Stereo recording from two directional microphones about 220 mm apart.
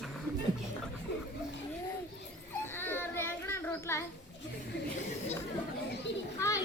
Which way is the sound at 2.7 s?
10° left (ahead or behind).